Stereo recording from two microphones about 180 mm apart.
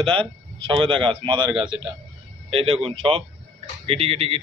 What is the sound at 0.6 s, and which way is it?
A man's voice, 30° right (ahead or behind).